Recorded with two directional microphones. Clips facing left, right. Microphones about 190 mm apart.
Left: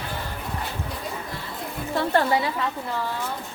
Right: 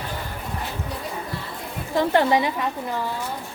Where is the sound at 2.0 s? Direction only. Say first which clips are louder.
Right 3 dB; 15° right (ahead or behind).